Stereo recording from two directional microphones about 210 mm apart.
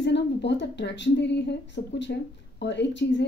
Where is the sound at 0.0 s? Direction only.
55° left (ahead or behind).